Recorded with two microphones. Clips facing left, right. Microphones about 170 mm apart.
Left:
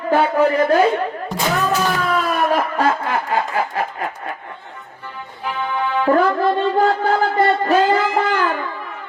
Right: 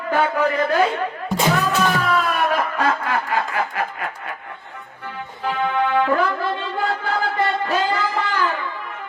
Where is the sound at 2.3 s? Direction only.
30° left (ahead or behind).